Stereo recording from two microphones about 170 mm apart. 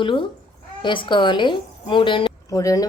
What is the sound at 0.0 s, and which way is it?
A woman's voice, 30° left (ahead or behind).